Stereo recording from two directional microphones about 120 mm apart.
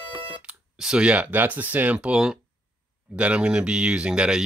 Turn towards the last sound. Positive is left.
turn(degrees=-5)  # may be behind; listen again after turning